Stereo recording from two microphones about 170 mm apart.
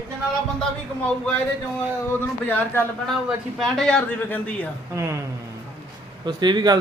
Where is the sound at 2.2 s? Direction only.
10° left (ahead or behind).